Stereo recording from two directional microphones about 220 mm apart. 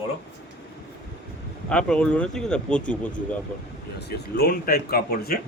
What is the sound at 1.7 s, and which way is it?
Speech, 5° left (ahead or behind).